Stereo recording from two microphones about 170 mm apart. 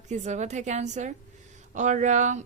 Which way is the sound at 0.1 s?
45° right (ahead or behind).